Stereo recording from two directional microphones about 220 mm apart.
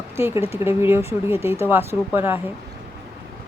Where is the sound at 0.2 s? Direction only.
10° right (ahead or behind).